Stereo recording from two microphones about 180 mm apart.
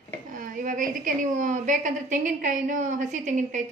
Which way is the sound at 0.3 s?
50° right (ahead or behind).